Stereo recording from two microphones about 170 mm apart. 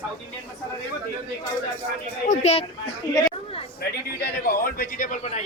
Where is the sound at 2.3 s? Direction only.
40° left (ahead or behind).